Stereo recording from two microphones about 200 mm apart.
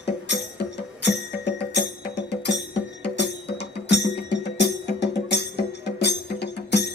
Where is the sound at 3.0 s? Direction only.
60° left (ahead or behind).